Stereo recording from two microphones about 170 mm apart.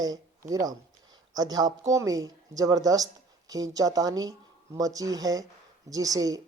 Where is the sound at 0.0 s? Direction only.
20° right (ahead or behind).